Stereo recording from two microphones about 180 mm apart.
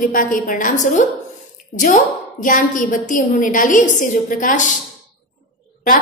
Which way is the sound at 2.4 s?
50° left (ahead or behind).